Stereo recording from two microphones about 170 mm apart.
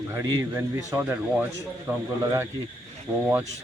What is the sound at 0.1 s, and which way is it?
Speech, 15° right (ahead or behind).